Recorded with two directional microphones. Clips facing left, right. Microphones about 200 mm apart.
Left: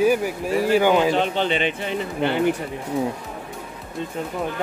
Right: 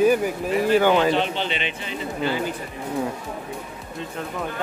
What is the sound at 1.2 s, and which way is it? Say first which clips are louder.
Speech: left 3 dB; 45° left (ahead or behind).